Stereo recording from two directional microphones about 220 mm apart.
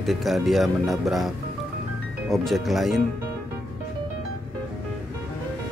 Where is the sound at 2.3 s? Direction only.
Centre (ahead or behind).